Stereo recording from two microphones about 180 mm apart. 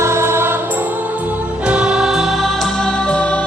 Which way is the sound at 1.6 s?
5° right (ahead or behind).